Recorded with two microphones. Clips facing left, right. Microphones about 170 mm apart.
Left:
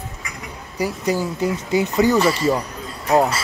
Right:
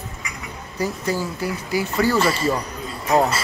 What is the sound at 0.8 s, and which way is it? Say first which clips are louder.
Speech: left 2 dB; 15° left (ahead or behind).